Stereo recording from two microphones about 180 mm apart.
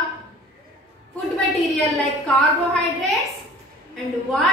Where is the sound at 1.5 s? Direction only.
Centre (ahead or behind).